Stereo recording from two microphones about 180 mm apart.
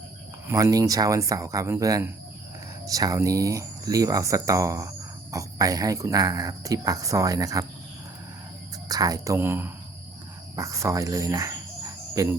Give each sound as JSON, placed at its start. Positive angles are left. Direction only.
{"t": 0.4, "sound": "speech", "side_deg": -20}
{"t": 8.9, "sound": "speech", "side_deg": -20}
{"t": 12.1, "sound": "cricket", "side_deg": -15}